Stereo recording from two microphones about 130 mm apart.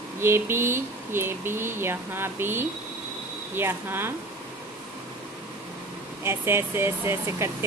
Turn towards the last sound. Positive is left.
turn(degrees=-20)  # may be behind; listen again after turning